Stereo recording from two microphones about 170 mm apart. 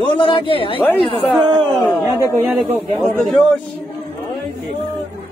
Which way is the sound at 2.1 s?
15° right (ahead or behind).